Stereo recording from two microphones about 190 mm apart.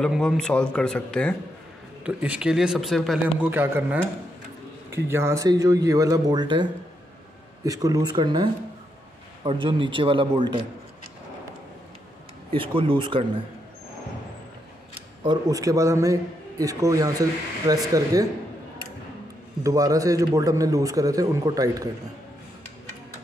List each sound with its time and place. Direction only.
0.0 s speech: centre (ahead or behind)
2.0 s speech: 5° right (ahead or behind)
3.4 s a man's voice: 10° right (ahead or behind); by 10.6 s 25° right (ahead or behind)
12.4 s a man's voice: 25° right (ahead or behind)
15.2 s a man's voice: 20° right (ahead or behind)
19.6 s a man's voice: 15° right (ahead or behind)